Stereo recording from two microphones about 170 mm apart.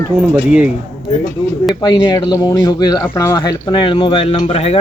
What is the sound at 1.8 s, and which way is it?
Speech, 25° left (ahead or behind).